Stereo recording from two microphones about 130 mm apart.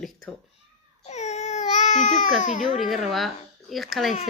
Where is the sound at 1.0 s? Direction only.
60° left (ahead or behind).